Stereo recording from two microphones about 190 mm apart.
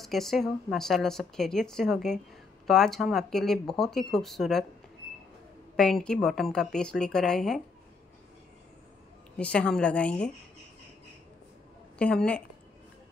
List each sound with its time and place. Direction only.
0.0 s speech: centre (ahead or behind)
5.8 s speech: 5° left (ahead or behind)
9.4 s speech: 5° left (ahead or behind)
12.0 s speech: 5° left (ahead or behind)